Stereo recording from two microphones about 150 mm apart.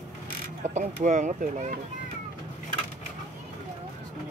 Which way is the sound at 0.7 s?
55° right (ahead or behind).